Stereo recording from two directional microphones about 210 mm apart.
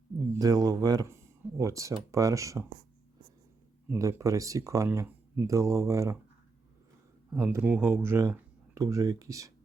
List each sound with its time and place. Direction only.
0.3 s speech: 15° right (ahead or behind)
3.8 s speech: 10° right (ahead or behind)
7.3 s speech: 10° right (ahead or behind)